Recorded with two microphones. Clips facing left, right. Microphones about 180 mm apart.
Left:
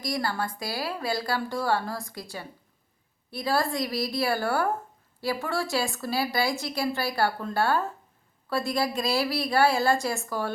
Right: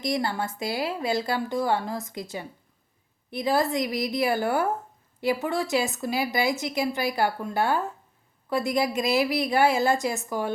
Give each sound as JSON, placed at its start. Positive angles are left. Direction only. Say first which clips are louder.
{"t": 0.0, "sound": "speech", "louder": "right 2 dB", "side_deg": -25}